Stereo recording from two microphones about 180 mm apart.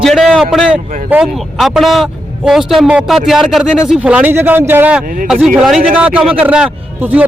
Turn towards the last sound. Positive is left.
turn(degrees=-10)  # may be behind; listen again after turning